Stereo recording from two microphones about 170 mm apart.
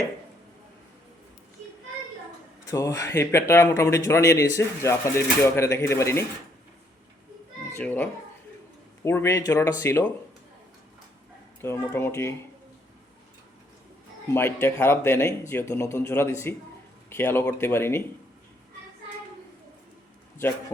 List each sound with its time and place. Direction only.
2.6 s speech: 20° left (ahead or behind)
7.7 s a child's voice: 10° left (ahead or behind)
11.6 s speech: 15° left (ahead or behind)
14.3 s speech: 15° left (ahead or behind)